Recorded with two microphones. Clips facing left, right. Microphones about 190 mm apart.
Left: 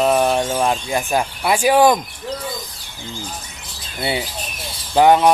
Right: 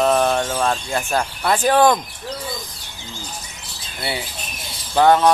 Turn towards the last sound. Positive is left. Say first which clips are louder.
# left 2 dB
turn(degrees=15)  # may be behind; listen again after turning